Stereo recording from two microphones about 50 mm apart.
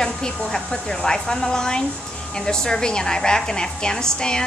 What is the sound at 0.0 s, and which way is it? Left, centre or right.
A woman's voice, centre.